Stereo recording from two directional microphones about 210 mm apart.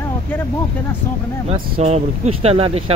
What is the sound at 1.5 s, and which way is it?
Speech, 30° right (ahead or behind).